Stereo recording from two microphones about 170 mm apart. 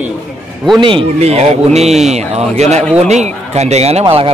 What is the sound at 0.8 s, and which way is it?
Speech, 30° right (ahead or behind).